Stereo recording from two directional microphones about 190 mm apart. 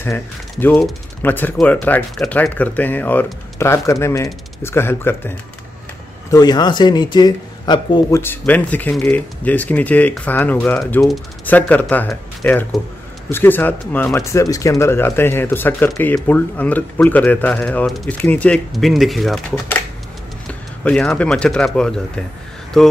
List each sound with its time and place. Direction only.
0.0 s speech: 10° left (ahead or behind)
6.3 s speech: 20° left (ahead or behind)
8.2 s speech: 10° left (ahead or behind)
20.8 s speech: 5° left (ahead or behind)